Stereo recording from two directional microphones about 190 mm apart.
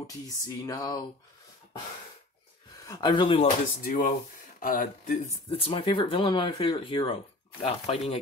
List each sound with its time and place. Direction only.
0.0 s speech: 20° left (ahead or behind)
2.9 s speech: 25° left (ahead or behind)
3.8 s speech: 40° left (ahead or behind)